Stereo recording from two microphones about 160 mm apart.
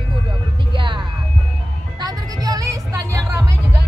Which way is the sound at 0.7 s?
30° right (ahead or behind).